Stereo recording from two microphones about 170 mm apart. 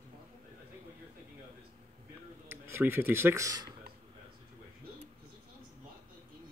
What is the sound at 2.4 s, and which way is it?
Speech, 15° right (ahead or behind).